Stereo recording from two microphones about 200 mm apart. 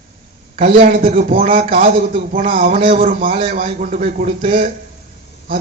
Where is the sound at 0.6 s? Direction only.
40° right (ahead or behind).